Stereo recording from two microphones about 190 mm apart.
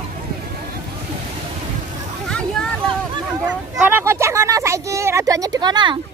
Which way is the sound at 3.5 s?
10° right (ahead or behind).